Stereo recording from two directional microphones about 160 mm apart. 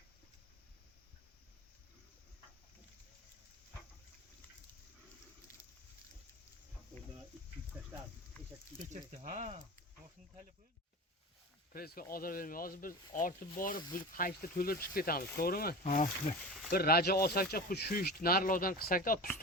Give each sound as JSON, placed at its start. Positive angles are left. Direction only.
{"t": 5.5, "sound": "a sound", "side_deg": 20}
{"t": 8.9, "sound": "speech", "side_deg": -55}
{"t": 11.7, "sound": "speech", "side_deg": 65}
{"t": 16.7, "sound": "speech", "side_deg": 75}